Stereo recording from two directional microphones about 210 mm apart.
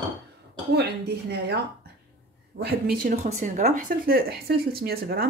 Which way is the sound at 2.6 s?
45° right (ahead or behind).